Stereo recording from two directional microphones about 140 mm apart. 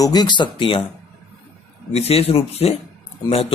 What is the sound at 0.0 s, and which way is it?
Speech, 30° left (ahead or behind).